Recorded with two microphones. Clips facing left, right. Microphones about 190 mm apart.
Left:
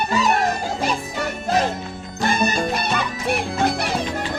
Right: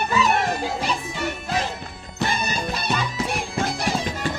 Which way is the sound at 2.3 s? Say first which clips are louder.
Left 9 dB; 55° left (ahead or behind).